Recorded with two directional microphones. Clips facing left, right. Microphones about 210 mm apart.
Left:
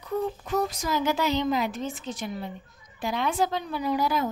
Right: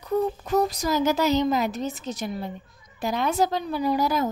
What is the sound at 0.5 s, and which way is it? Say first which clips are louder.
A woman's voice: right 4 dB; 35° right (ahead or behind).